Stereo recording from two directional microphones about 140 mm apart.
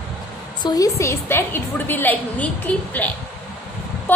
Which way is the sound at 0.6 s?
30° left (ahead or behind).